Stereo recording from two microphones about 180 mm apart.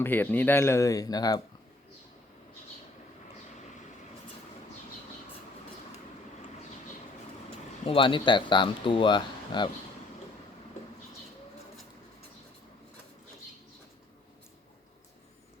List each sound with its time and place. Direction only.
0.0 s speech: 10° left (ahead or behind)
7.9 s speech: 30° left (ahead or behind)